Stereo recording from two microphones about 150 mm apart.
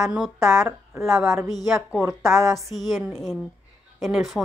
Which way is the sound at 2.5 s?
Centre (ahead or behind).